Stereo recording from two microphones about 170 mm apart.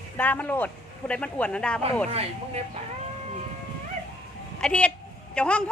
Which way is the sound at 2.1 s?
35° right (ahead or behind).